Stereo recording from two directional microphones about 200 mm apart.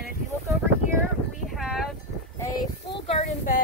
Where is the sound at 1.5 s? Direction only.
Centre (ahead or behind).